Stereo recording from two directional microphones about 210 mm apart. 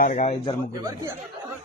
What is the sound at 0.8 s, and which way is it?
Speech, 15° right (ahead or behind).